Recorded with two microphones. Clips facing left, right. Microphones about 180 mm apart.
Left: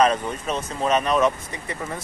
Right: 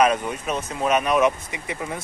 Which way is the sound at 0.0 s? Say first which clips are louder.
Even; 10° right (ahead or behind).